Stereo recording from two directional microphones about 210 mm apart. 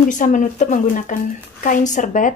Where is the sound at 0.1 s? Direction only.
35° left (ahead or behind).